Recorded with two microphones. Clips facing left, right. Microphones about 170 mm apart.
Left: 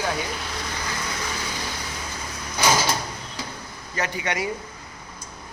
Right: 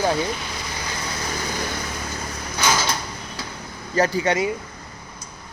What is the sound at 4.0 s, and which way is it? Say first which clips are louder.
Speech: right 7 dB; 35° right (ahead or behind).